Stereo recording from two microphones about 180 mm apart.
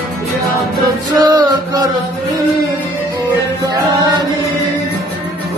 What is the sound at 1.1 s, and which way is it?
Music, 20° right (ahead or behind).